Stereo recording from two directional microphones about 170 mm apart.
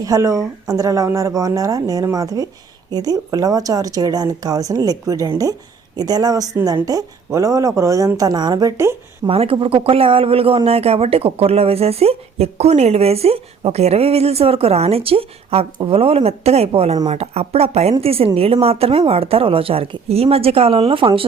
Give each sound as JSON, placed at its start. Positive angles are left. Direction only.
{"t": 0.0, "sound": "a woman's voice", "side_deg": -20}
{"t": 9.2, "sound": "speech", "side_deg": -30}